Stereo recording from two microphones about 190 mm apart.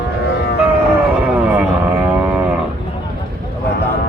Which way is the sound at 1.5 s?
10° right (ahead or behind).